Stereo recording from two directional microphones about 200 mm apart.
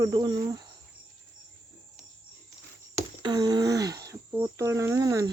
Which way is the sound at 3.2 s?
20° right (ahead or behind).